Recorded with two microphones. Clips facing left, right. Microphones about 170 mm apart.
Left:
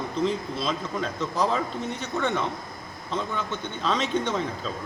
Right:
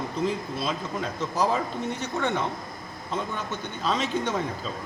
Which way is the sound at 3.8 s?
5° right (ahead or behind).